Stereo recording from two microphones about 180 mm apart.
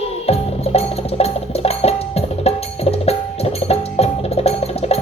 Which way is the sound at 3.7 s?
35° left (ahead or behind).